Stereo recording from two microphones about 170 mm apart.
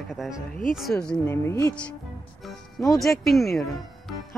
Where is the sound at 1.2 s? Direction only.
15° left (ahead or behind).